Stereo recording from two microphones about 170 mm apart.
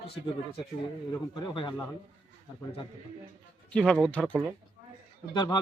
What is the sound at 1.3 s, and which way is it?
Speech, 30° left (ahead or behind).